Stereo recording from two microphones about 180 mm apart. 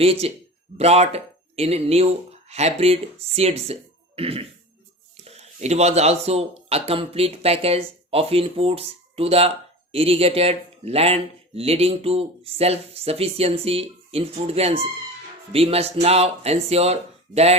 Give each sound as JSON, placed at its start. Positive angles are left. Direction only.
{"t": 0.0, "sound": "speech", "side_deg": -35}